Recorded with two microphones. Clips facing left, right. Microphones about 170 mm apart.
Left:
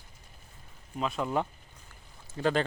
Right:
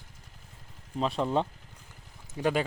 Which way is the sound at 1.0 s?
30° right (ahead or behind).